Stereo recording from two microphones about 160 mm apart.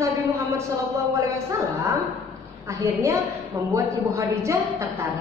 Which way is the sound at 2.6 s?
20° right (ahead or behind).